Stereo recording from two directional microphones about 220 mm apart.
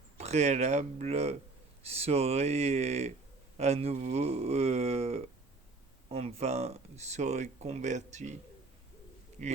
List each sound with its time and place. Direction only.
0.2 s speech: 30° right (ahead or behind)
9.4 s speech: 35° right (ahead or behind)